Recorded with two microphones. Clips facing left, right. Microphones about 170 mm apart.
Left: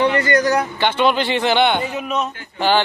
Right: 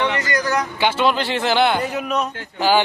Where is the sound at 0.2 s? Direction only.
30° left (ahead or behind).